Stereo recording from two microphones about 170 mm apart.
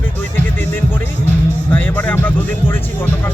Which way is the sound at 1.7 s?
10° left (ahead or behind).